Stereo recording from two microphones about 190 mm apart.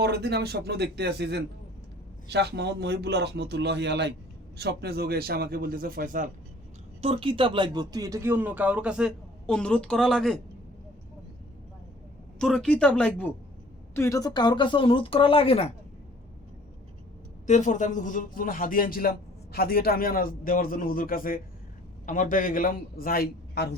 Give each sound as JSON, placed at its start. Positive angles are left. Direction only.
{"t": 0.0, "sound": "speech", "side_deg": -55}
{"t": 7.0, "sound": "speech", "side_deg": -30}
{"t": 12.4, "sound": "speech", "side_deg": 5}
{"t": 17.4, "sound": "a man's voice", "side_deg": 40}